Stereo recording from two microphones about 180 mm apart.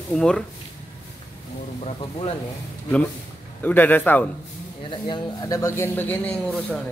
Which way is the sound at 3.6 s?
10° left (ahead or behind).